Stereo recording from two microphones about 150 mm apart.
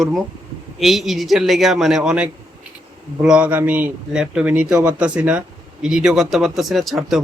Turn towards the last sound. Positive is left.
turn(degrees=0)  # may be behind; listen again after turning